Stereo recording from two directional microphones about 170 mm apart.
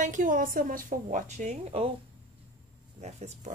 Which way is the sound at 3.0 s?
40° right (ahead or behind).